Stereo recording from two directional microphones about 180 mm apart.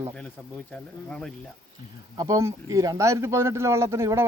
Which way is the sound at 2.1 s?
20° right (ahead or behind).